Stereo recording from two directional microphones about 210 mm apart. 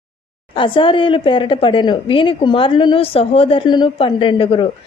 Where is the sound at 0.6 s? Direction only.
25° left (ahead or behind).